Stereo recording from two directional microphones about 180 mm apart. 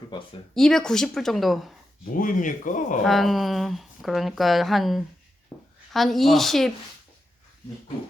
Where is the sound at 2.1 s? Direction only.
50° left (ahead or behind).